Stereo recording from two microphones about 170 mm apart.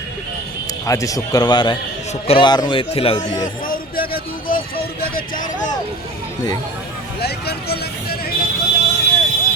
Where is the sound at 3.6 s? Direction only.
55° left (ahead or behind).